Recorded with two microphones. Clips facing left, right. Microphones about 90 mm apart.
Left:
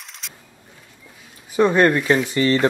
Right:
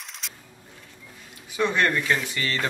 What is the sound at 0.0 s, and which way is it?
Vehicle, centre (ahead or behind).